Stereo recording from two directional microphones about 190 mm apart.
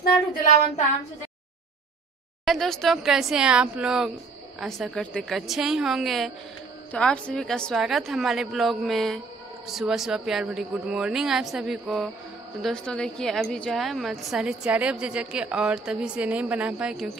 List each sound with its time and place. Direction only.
2.4 s a woman's voice: centre (ahead or behind)